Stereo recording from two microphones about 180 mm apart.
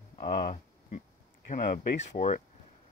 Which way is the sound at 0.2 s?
30° left (ahead or behind).